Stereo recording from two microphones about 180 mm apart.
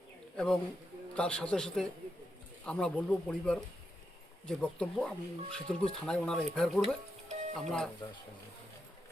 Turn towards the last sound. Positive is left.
turn(degrees=0)  # may be behind; listen again after turning